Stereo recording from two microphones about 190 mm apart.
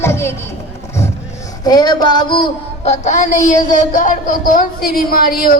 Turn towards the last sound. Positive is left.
turn(degrees=50)  # may be behind; listen again after turning